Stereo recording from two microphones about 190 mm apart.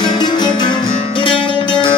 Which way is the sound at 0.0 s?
20° left (ahead or behind).